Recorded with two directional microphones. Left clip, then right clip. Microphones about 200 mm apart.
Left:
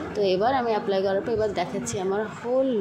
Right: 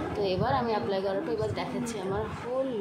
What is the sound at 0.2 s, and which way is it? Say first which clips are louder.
A woman's voice: left 6 dB; 25° left (ahead or behind).